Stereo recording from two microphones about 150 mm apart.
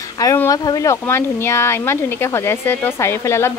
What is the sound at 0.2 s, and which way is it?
A woman's voice, 20° left (ahead or behind).